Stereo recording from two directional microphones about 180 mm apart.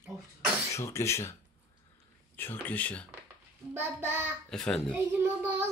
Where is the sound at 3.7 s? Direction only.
10° right (ahead or behind).